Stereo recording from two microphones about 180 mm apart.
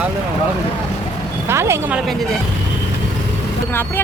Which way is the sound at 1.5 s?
15° right (ahead or behind).